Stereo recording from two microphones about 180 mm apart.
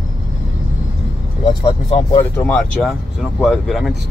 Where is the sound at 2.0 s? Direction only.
20° left (ahead or behind).